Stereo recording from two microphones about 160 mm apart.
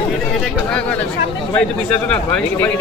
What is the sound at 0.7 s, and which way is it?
A man's voice, 5° left (ahead or behind).